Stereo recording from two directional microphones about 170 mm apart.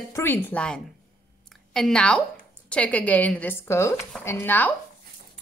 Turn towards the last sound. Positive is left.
turn(degrees=10)  # may be behind; listen again after turning